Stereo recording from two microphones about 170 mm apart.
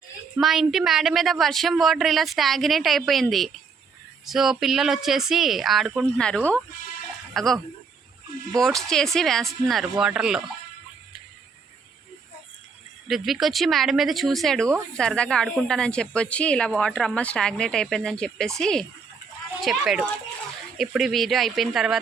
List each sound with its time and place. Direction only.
0.3 s speech: centre (ahead or behind)
8.6 s speech: 5° left (ahead or behind)
13.1 s speech: centre (ahead or behind)